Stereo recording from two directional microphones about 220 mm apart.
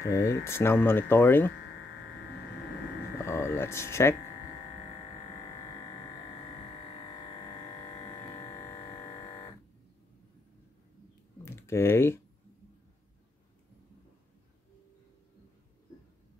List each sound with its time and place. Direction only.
0.0 s speech: 15° left (ahead or behind)
3.3 s speech: 10° left (ahead or behind)
8.0 s music: 15° left (ahead or behind)
11.4 s speech: 10° left (ahead or behind)